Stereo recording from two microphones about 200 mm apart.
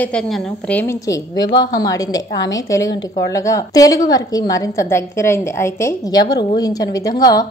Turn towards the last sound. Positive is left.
turn(degrees=20)  # may be behind; listen again after turning